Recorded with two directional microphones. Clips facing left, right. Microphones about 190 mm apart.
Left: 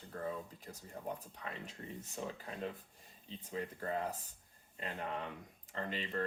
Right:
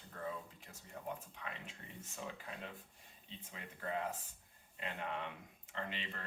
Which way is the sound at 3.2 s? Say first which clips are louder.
Left 11 dB; 35° left (ahead or behind).